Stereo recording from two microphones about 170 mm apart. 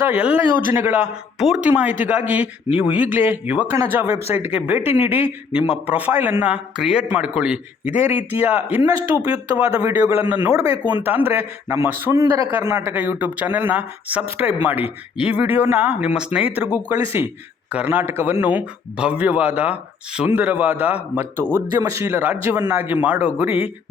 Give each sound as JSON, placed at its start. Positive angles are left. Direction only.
{"t": 0.0, "sound": "speech", "side_deg": -10}